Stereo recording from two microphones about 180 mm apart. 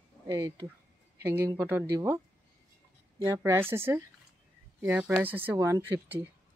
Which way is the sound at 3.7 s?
15° right (ahead or behind).